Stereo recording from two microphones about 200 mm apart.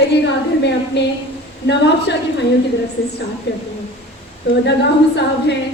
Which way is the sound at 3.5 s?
60° left (ahead or behind).